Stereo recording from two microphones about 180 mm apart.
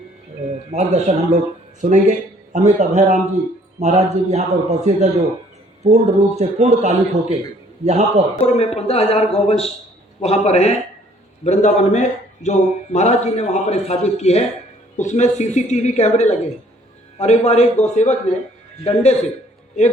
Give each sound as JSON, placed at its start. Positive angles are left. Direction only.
{"t": 0.7, "sound": "a man's voice", "side_deg": -40}
{"t": 8.4, "sound": "a man's voice", "side_deg": 35}